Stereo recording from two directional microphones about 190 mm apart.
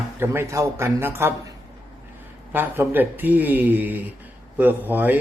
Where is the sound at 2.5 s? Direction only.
10° right (ahead or behind).